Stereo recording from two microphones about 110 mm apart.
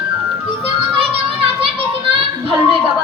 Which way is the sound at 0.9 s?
55° right (ahead or behind).